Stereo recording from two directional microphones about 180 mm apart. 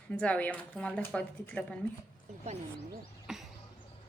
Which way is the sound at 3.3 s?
5° right (ahead or behind).